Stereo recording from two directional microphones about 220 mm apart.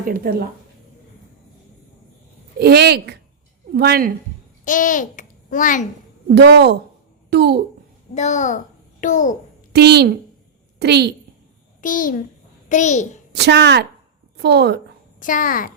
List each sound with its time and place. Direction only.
0.0 s a woman's voice: 40° right (ahead or behind)
2.6 s a woman's voice: 45° right (ahead or behind)
4.6 s a child's voice: 35° left (ahead or behind)
6.2 s a woman's voice: 50° right (ahead or behind)
8.1 s a child's voice: 30° left (ahead or behind)
9.7 s a woman's voice: 50° right (ahead or behind)
11.8 s a child's voice: 35° left (ahead or behind)
13.3 s a woman's voice: 50° right (ahead or behind)
15.2 s speech: 40° left (ahead or behind)